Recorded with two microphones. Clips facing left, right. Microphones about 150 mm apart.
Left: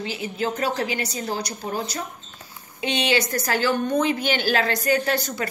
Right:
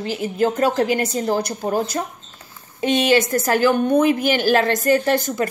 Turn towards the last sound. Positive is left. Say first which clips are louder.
# right 5 dB
turn(degrees=-50)  # may be behind; listen again after turning